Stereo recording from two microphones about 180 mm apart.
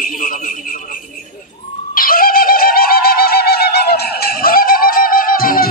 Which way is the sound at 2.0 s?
55° left (ahead or behind).